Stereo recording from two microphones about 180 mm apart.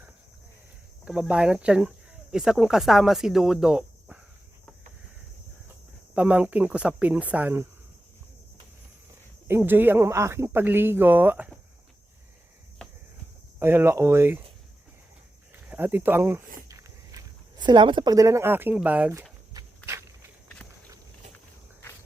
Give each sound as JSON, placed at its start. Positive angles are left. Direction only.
{"t": 1.0, "sound": "speech", "side_deg": -5}
{"t": 6.1, "sound": "speech", "side_deg": -10}
{"t": 9.5, "sound": "speech", "side_deg": -10}
{"t": 13.6, "sound": "speech", "side_deg": -15}
{"t": 15.7, "sound": "speech", "side_deg": -10}
{"t": 19.5, "sound": "walk", "side_deg": -15}